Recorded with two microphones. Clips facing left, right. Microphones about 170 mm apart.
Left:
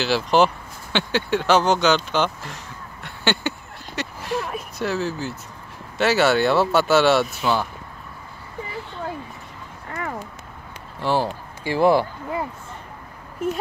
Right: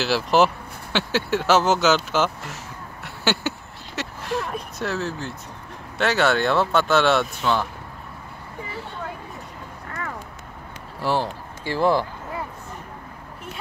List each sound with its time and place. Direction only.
0.0 s speech: centre (ahead or behind)
0.9 s a sound: centre (ahead or behind)
5.9 s speech: 5° left (ahead or behind)
11.0 s speech: centre (ahead or behind)
11.6 s speech: 10° left (ahead or behind)
13.4 s speech: 45° left (ahead or behind)